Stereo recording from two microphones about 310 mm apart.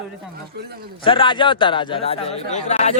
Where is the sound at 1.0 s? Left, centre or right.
Centre.